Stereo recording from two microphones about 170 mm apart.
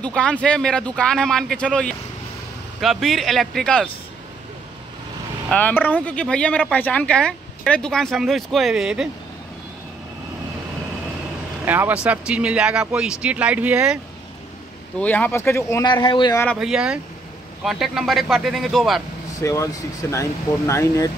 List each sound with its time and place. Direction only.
0.0 s speech: 5° left (ahead or behind)
5.5 s speech: 10° left (ahead or behind)
11.6 s speech: 10° right (ahead or behind)
15.0 s speech: 10° left (ahead or behind)
15.9 s speech: 30° left (ahead or behind)
16.5 s speech: 5° right (ahead or behind)
19.4 s speech: 20° left (ahead or behind)